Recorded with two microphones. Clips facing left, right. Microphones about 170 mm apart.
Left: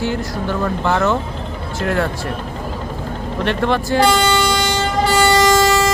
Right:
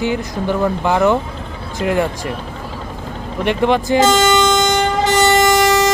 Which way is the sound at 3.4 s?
15° right (ahead or behind).